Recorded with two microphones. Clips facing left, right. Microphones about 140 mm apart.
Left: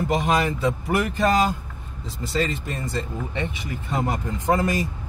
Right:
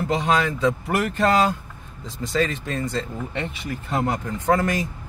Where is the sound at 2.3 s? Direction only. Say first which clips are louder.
Right 2 dB; 90° right.